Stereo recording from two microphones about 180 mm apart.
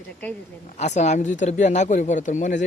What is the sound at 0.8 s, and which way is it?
Speech, 40° left (ahead or behind).